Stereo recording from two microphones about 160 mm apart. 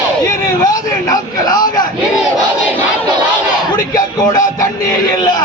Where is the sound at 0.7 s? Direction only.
20° left (ahead or behind).